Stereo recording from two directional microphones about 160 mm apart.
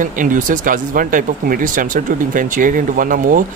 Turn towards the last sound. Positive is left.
turn(degrees=-55)  # may be behind; listen again after turning